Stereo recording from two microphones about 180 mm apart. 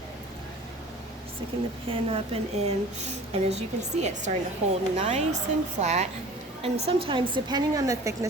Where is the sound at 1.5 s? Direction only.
30° right (ahead or behind).